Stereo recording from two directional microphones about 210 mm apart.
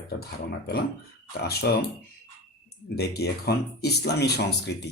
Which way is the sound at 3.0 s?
50° left (ahead or behind).